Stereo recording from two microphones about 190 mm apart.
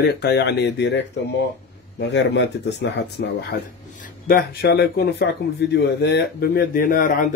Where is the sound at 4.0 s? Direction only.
50° left (ahead or behind).